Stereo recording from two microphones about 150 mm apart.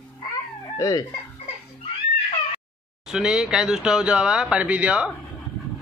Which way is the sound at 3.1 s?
5° right (ahead or behind).